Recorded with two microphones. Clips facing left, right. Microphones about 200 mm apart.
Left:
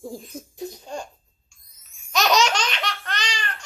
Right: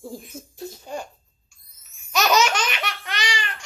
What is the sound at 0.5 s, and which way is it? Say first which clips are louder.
Laughter: left 2 dB; 15° left (ahead or behind).